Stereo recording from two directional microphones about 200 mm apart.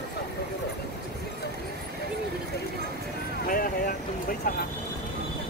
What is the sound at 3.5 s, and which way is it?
Vehicle, 45° left (ahead or behind).